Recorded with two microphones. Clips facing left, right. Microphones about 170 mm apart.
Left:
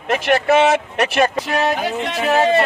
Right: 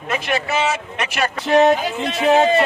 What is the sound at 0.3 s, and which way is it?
Speech, 60° left (ahead or behind).